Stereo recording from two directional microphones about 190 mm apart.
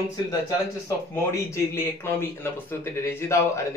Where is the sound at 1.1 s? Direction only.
15° left (ahead or behind).